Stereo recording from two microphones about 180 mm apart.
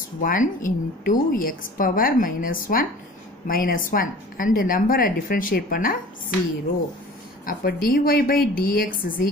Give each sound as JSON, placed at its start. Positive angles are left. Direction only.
{"t": 0.2, "sound": "a woman's voice", "side_deg": 50}
{"t": 7.4, "sound": "a woman's voice", "side_deg": 55}